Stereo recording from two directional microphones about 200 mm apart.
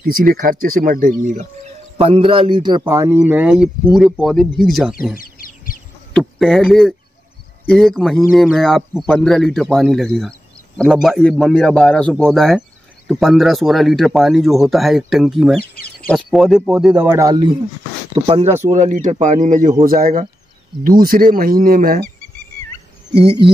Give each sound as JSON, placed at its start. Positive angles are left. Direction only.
{"t": 0.4, "sound": "a man's voice", "side_deg": -45}
{"t": 3.2, "sound": "a man's voice", "side_deg": -5}
{"t": 5.1, "sound": "a sound", "side_deg": 45}
{"t": 6.1, "sound": "a man's voice", "side_deg": 0}